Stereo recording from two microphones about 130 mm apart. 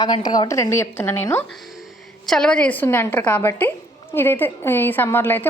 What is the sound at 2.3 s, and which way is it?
A woman's voice, 5° left (ahead or behind).